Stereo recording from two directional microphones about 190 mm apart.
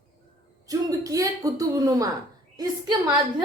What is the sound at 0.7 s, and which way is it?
A woman's voice, 20° right (ahead or behind).